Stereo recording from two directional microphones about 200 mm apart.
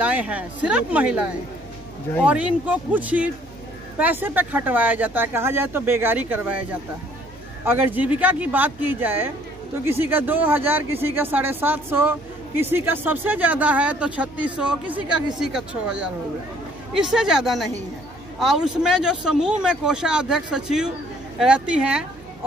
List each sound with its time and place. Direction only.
0.0 s speech: 5° right (ahead or behind)
7.6 s speech: 10° right (ahead or behind)
15.0 s speech: 25° right (ahead or behind)
15.4 s speech: 5° right (ahead or behind)